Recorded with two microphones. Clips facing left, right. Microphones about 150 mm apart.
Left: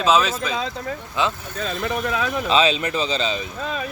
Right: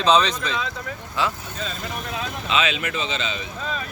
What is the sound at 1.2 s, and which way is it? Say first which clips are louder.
Speech: left 2 dB; 20° left (ahead or behind).